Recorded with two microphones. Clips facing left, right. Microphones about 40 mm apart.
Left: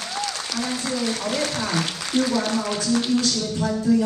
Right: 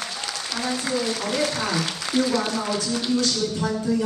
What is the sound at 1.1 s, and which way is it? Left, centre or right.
Speech, centre.